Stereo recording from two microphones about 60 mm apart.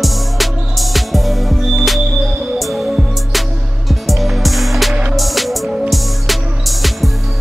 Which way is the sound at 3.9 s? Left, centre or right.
Centre.